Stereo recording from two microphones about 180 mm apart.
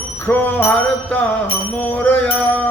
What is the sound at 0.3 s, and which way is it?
Music, 10° left (ahead or behind).